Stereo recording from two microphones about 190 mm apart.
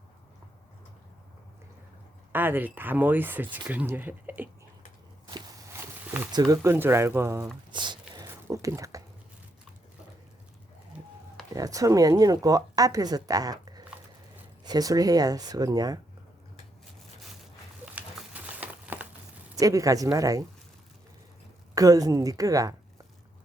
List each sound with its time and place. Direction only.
2.3 s speech: 10° right (ahead or behind)
8.1 s a sound: 15° right (ahead or behind)
11.5 s speech: 20° right (ahead or behind)
17.9 s crumpling: 10° right (ahead or behind)
19.5 s speech: 15° right (ahead or behind)
21.8 s speech: 20° right (ahead or behind)